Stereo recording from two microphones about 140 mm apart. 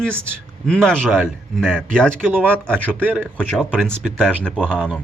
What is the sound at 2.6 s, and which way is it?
A man's voice, 5° left (ahead or behind).